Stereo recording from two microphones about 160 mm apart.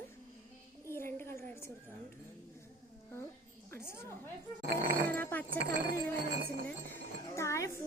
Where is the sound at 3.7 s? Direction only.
15° left (ahead or behind).